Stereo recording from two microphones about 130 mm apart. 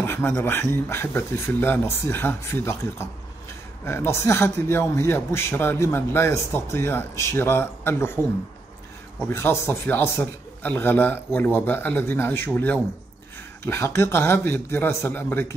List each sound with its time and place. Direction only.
0.0 s a man's voice: 20° left (ahead or behind)
9.2 s a man's voice: 20° left (ahead or behind)